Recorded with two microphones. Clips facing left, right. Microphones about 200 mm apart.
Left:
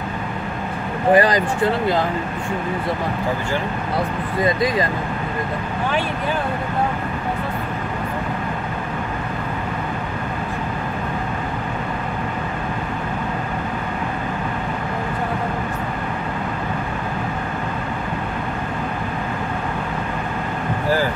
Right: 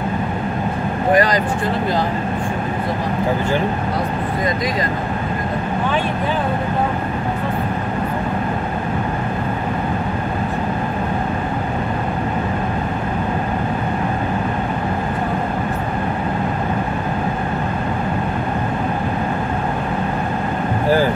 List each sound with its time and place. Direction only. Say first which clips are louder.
1.1 s speech: left 1 dB; 30° left (ahead or behind)